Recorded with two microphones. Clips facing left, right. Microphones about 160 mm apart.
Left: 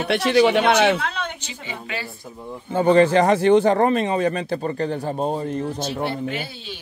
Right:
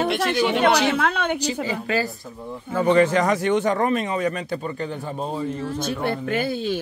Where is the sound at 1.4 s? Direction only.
40° right (ahead or behind).